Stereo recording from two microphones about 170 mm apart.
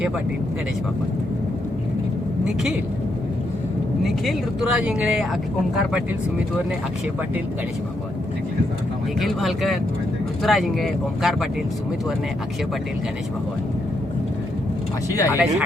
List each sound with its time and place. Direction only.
4.0 s speech: 5° right (ahead or behind)
9.2 s speech: centre (ahead or behind)
15.1 s speech: 15° left (ahead or behind)